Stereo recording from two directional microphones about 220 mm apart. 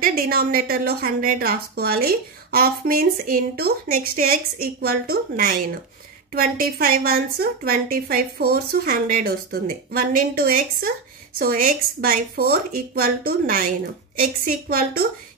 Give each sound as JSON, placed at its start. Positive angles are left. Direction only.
{"t": 0.0, "sound": "a woman's voice", "side_deg": -40}